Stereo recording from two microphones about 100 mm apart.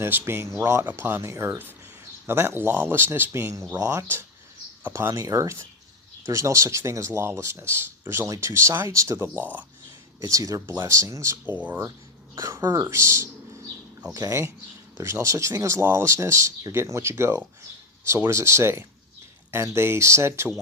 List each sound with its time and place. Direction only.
0.0 s speech: 20° right (ahead or behind)
10.2 s speech: 30° right (ahead or behind)
11.5 s speech: 15° right (ahead or behind)
12.4 s speech: 30° right (ahead or behind)